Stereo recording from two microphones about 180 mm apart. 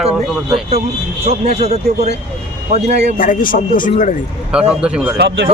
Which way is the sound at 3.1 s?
50° left (ahead or behind).